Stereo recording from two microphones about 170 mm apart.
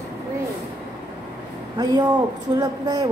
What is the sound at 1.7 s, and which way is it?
Speech, 25° right (ahead or behind).